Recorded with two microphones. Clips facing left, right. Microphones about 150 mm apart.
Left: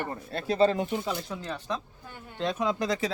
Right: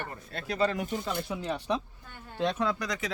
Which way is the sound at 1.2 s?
10° right (ahead or behind).